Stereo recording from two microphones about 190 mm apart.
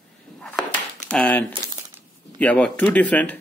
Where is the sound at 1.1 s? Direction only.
5° left (ahead or behind).